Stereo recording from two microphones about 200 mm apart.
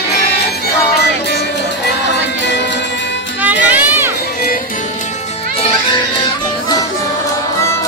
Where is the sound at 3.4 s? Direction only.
10° right (ahead or behind).